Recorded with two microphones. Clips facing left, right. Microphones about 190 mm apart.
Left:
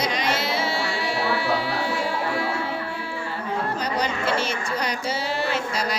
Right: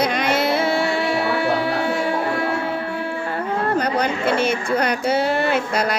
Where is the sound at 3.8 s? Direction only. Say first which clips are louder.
Right 5 dB; 55° right (ahead or behind).